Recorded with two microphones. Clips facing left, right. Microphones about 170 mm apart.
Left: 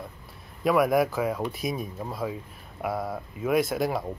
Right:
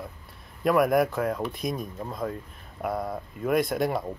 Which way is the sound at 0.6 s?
Centre (ahead or behind).